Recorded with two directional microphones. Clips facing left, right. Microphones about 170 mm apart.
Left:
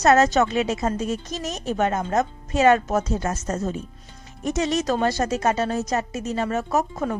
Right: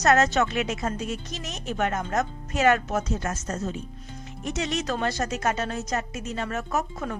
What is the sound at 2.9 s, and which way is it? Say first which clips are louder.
Speech: left 4 dB; 40° left (ahead or behind).